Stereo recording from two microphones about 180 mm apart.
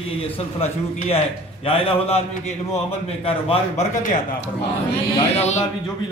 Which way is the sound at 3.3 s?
30° left (ahead or behind).